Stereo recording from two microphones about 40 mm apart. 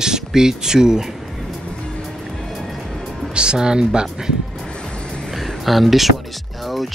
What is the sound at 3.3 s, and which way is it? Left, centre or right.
Speech, right.